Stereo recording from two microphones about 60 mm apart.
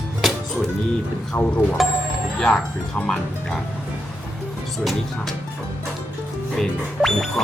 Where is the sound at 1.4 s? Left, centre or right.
Left.